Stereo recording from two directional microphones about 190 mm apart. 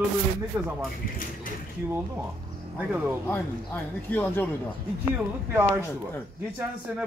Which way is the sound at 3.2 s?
10° left (ahead or behind).